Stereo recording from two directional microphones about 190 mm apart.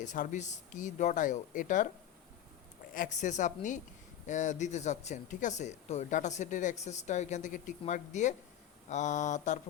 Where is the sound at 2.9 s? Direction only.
40° left (ahead or behind).